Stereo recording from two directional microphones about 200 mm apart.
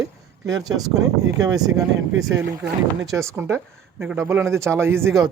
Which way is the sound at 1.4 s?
20° right (ahead or behind).